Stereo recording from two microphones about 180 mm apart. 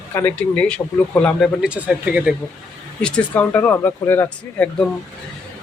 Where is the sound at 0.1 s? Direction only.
10° left (ahead or behind).